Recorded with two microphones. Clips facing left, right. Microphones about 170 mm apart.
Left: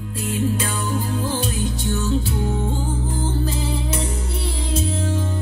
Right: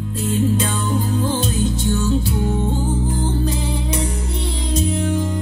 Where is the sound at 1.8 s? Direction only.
20° right (ahead or behind).